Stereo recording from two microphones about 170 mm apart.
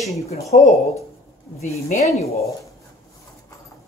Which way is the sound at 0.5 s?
50° left (ahead or behind).